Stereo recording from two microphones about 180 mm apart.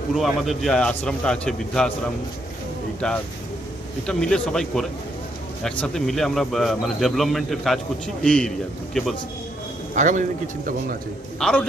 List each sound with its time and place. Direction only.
0.1 s speech: centre (ahead or behind)
3.0 s speech: 5° left (ahead or behind)
9.9 s a man's voice: 45° right (ahead or behind)
11.3 s a man's voice: 5° left (ahead or behind)